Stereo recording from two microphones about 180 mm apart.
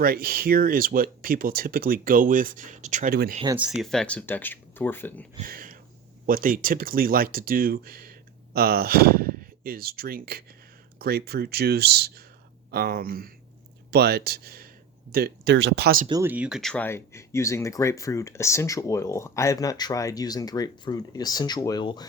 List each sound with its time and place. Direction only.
0.0 s speech: 55° right (ahead or behind)
3.5 s speech: 5° right (ahead or behind); by 5.2 s 10° left (ahead or behind)
5.4 s speech: 50° right (ahead or behind)
16.2 s speech: 10° right (ahead or behind); by 22.0 s 25° left (ahead or behind)